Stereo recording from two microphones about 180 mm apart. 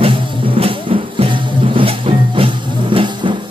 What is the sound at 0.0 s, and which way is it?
Music, 30° right (ahead or behind).